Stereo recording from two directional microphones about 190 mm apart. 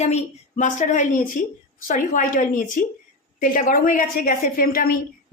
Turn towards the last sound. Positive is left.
turn(degrees=50)  # may be behind; listen again after turning